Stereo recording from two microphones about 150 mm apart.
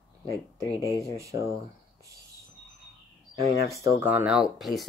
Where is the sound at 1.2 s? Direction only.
20° right (ahead or behind).